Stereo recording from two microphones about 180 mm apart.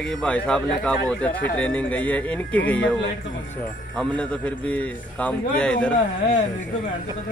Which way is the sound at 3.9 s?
5° left (ahead or behind).